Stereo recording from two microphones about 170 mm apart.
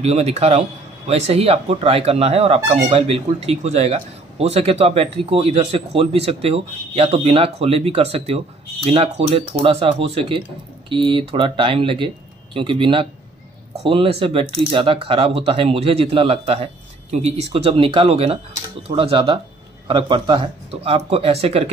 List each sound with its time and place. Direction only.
0.0 s a man's voice: 40° right (ahead or behind)